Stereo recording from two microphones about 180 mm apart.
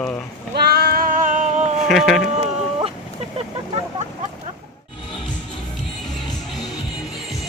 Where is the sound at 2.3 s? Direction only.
35° right (ahead or behind).